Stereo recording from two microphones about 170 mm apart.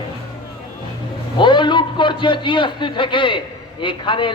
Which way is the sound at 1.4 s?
30° left (ahead or behind).